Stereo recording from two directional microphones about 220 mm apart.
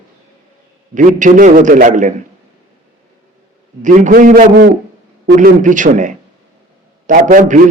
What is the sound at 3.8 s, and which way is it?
A man's voice, 35° right (ahead or behind).